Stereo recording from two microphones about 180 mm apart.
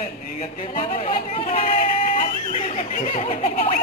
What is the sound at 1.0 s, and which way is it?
Speech, 30° left (ahead or behind).